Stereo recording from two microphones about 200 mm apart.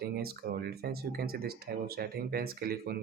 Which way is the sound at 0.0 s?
50° right (ahead or behind).